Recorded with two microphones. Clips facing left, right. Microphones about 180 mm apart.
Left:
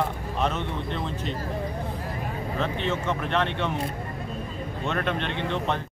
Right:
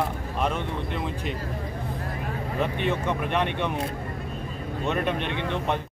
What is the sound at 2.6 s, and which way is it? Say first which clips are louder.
Speech: right 2 dB; 15° right (ahead or behind).